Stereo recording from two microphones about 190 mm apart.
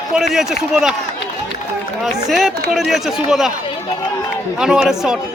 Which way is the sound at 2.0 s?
Centre (ahead or behind).